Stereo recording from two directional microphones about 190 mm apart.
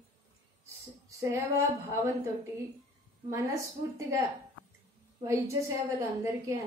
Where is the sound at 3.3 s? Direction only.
15° right (ahead or behind).